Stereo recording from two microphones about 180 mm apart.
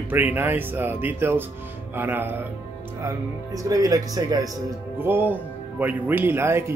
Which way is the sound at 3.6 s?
20° right (ahead or behind).